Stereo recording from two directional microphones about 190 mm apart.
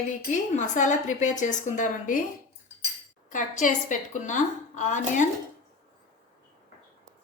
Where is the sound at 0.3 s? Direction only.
40° left (ahead or behind).